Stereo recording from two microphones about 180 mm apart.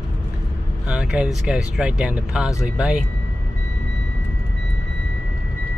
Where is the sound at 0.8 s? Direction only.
5° right (ahead or behind).